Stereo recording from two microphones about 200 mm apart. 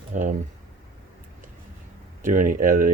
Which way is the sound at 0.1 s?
40° right (ahead or behind).